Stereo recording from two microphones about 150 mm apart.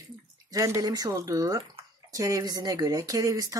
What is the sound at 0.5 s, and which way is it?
Speech, 20° right (ahead or behind).